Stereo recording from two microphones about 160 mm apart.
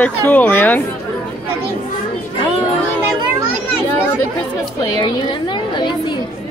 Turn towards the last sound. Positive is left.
turn(degrees=30)  # may be behind; listen again after turning